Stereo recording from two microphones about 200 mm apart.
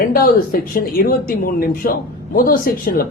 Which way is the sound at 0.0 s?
45° left (ahead or behind).